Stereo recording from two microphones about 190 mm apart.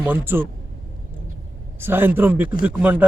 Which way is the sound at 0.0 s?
10° right (ahead or behind).